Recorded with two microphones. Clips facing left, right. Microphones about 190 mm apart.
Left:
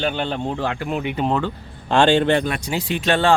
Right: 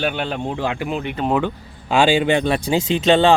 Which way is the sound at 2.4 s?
30° right (ahead or behind).